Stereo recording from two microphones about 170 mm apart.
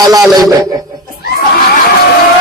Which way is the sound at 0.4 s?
20° right (ahead or behind).